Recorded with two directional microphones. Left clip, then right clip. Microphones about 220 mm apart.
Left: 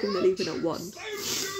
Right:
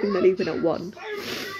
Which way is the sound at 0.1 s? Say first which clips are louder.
Right 5 dB; 15° left (ahead or behind).